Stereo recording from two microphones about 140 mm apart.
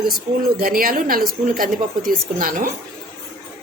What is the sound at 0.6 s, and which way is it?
A woman's voice, 90° right.